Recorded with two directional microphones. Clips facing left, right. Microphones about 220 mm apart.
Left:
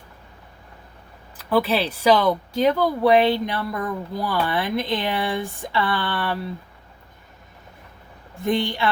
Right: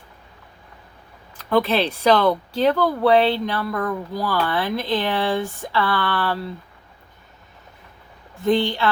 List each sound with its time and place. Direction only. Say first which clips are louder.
1.4 s speech: right 1 dB; 5° left (ahead or behind)
8.4 s speech: right 3 dB; 15° left (ahead or behind)